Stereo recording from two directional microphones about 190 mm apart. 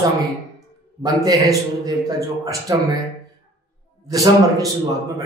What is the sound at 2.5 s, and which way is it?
Speech, 20° right (ahead or behind).